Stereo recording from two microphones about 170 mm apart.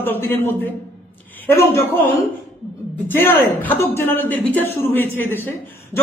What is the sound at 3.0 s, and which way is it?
A man's voice, 10° left (ahead or behind).